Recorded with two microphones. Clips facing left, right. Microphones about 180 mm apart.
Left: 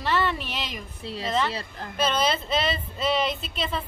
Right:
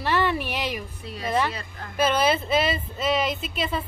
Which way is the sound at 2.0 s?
10° right (ahead or behind).